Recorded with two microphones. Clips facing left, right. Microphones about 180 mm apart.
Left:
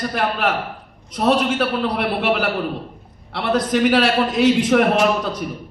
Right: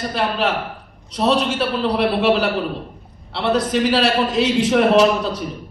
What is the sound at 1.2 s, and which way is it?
Speech, 50° left (ahead or behind).